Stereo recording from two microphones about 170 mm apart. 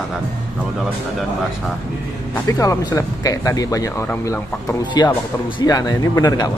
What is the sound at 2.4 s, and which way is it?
Speech, 20° left (ahead or behind).